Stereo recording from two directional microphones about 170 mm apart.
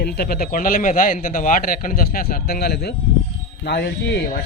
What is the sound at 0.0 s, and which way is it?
A man's voice, 65° left (ahead or behind).